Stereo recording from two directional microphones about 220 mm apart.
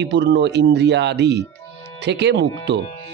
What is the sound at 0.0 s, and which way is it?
Speech, 50° right (ahead or behind).